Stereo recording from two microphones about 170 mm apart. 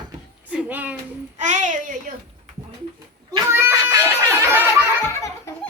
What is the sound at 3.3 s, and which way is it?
Cat, 15° right (ahead or behind).